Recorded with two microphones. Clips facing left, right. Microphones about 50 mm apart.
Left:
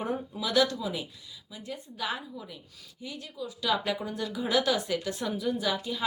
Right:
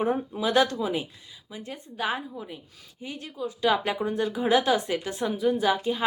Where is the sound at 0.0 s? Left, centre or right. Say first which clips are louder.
Right 6 dB; right.